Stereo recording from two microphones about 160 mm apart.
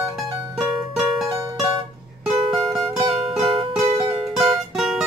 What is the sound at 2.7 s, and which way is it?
Music, 20° right (ahead or behind).